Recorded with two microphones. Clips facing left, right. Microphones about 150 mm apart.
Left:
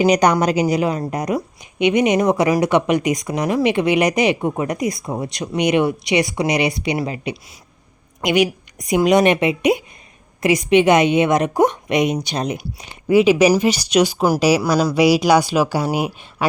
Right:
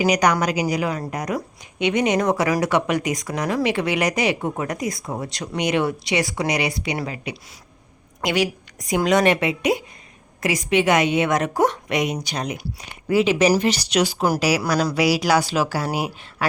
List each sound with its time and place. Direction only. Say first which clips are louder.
0.0 s speech: left 4 dB; 30° left (ahead or behind)
13.1 s a woman's voice: left 4 dB; 15° left (ahead or behind)